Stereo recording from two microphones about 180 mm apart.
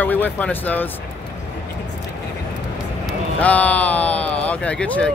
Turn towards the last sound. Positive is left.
turn(degrees=5)  # may be behind; listen again after turning